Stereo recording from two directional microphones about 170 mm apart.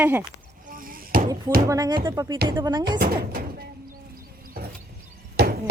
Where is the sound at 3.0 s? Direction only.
65° right (ahead or behind).